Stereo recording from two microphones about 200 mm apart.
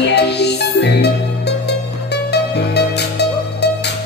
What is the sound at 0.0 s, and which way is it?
Music, 55° left (ahead or behind).